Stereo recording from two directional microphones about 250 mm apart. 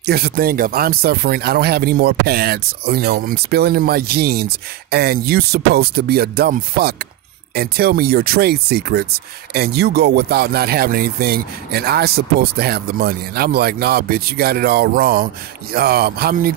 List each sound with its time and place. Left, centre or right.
0.0 s speech: right